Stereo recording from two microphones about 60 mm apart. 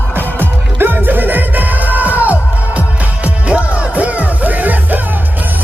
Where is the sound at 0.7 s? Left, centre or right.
Right.